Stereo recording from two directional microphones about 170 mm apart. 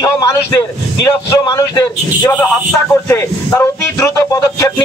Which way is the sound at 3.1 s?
20° left (ahead or behind).